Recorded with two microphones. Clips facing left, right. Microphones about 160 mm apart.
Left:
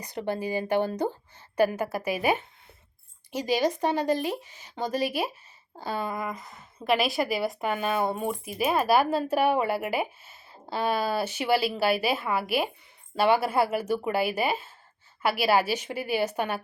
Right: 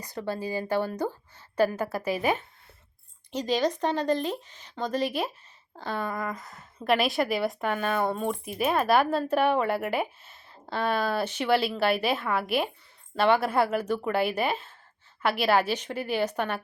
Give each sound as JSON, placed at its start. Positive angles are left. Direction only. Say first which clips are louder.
{"t": 0.0, "sound": "a woman's voice", "louder": "left 2 dB", "side_deg": 20}